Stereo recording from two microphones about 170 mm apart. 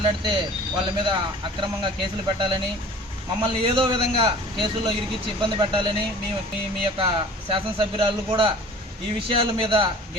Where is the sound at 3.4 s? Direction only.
30° right (ahead or behind).